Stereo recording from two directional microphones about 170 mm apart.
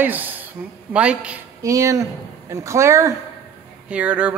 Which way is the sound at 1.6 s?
20° right (ahead or behind).